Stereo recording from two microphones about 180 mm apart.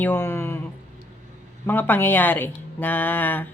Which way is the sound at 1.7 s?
10° left (ahead or behind).